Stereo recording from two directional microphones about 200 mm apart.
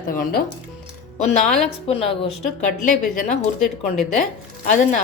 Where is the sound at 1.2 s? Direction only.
35° left (ahead or behind).